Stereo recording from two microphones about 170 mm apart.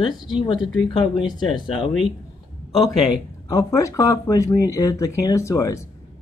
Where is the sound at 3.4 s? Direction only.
20° left (ahead or behind).